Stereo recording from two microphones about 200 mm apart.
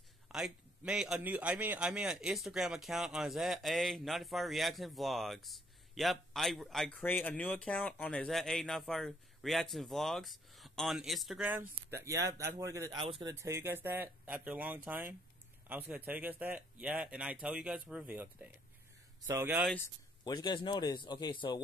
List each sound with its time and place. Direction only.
0.3 s a man's voice: 5° right (ahead or behind)
13.0 s speech: 30° right (ahead or behind)
13.3 s speech: 15° right (ahead or behind)
20.2 s a man's voice: 20° left (ahead or behind)